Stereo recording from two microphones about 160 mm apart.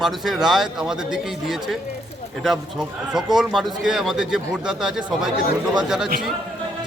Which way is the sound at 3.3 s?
Centre (ahead or behind).